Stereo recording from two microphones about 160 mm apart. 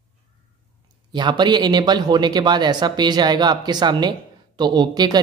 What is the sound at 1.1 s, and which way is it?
Speech, 30° right (ahead or behind).